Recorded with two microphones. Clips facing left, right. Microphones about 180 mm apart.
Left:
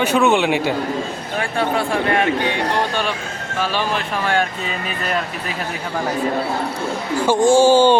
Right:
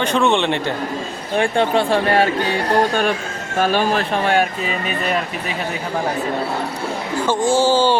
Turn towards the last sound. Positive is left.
turn(degrees=15)  # may be behind; listen again after turning